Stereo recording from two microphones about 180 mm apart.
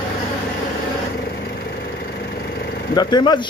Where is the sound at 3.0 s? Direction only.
25° left (ahead or behind).